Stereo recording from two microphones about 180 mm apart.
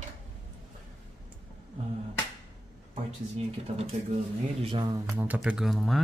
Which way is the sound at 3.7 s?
35° right (ahead or behind).